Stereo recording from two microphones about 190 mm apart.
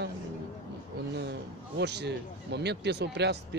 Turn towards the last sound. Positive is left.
turn(degrees=-65)  # may be behind; listen again after turning